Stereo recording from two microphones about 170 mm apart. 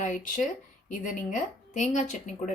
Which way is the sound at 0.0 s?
50° left (ahead or behind).